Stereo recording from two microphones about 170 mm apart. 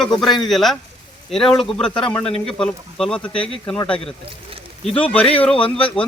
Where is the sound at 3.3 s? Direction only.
30° left (ahead or behind).